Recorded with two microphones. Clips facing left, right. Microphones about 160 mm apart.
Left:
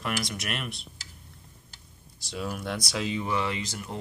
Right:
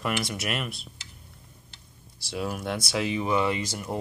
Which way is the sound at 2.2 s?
55° right (ahead or behind).